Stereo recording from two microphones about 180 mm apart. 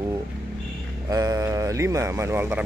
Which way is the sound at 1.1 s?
20° right (ahead or behind).